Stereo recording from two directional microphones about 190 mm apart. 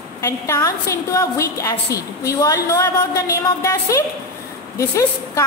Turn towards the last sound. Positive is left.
turn(degrees=15)  # may be behind; listen again after turning